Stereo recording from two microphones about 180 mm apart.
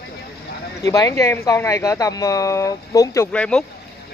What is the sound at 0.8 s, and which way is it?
Speech, 20° left (ahead or behind).